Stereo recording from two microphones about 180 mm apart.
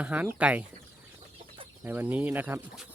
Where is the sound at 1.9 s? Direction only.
10° right (ahead or behind).